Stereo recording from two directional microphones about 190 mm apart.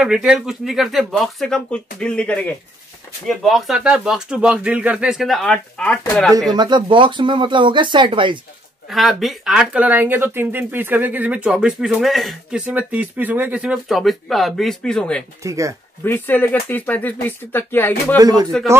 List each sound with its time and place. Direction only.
0.0 s speech: 5° right (ahead or behind)
6.5 s speech: 25° right (ahead or behind)
8.9 s speech: centre (ahead or behind)
15.4 s speech: 15° right (ahead or behind)
16.0 s speech: 10° left (ahead or behind)
18.1 s speech: 20° right (ahead or behind)